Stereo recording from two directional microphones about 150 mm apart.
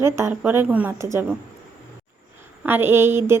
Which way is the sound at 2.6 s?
15° right (ahead or behind).